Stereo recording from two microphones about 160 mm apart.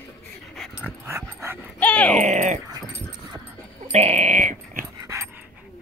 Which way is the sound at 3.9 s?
45° right (ahead or behind).